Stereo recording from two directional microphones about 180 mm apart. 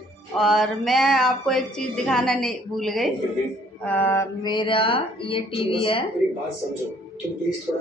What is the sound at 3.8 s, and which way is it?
Speech, 10° left (ahead or behind).